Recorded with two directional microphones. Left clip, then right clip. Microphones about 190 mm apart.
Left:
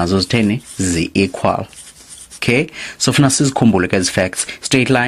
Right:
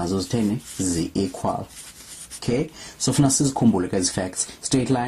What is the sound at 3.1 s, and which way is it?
Speech, 25° left (ahead or behind).